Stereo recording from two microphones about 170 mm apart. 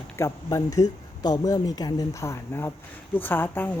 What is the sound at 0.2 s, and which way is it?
A woman's voice, 20° left (ahead or behind).